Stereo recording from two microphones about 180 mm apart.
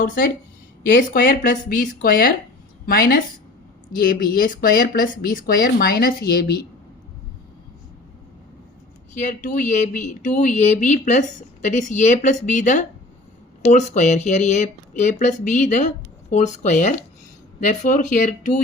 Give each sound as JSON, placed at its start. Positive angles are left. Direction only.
{"t": 0.9, "sound": "speech", "side_deg": 50}
{"t": 9.1, "sound": "speech", "side_deg": 45}